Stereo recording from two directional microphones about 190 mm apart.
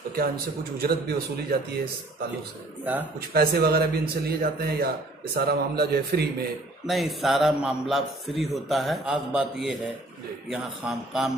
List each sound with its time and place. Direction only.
0.7 s a man's voice: 55° right (ahead or behind)
2.8 s speech: 10° right (ahead or behind)
3.3 s a man's voice: 55° right (ahead or behind)
6.9 s a man's voice: centre (ahead or behind)